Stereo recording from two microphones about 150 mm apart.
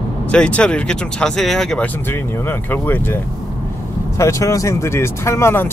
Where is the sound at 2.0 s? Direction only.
15° left (ahead or behind).